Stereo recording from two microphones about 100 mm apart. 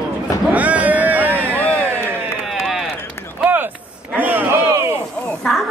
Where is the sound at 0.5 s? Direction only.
15° right (ahead or behind).